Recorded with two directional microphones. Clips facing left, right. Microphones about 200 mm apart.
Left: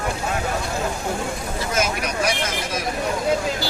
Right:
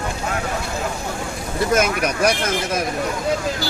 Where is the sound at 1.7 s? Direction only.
60° right (ahead or behind).